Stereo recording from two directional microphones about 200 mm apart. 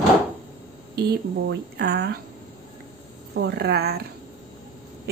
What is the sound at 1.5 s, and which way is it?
Speech, 55° right (ahead or behind).